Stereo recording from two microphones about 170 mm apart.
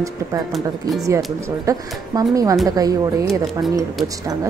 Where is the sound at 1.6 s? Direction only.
20° right (ahead or behind).